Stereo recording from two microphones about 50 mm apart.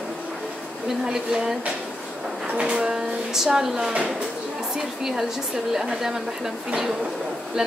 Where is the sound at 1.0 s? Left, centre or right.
Centre.